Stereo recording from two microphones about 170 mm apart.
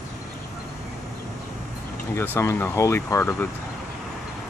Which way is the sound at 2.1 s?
15° left (ahead or behind).